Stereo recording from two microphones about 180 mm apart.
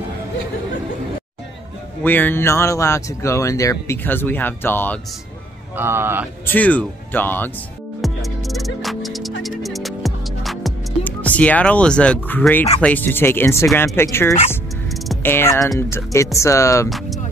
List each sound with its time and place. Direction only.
2.0 s speech: 10° left (ahead or behind)
5.8 s speech: 10° right (ahead or behind)
6.4 s speech: 10° left (ahead or behind)
8.0 s music: centre (ahead or behind)
12.8 s speech: 10° left (ahead or behind)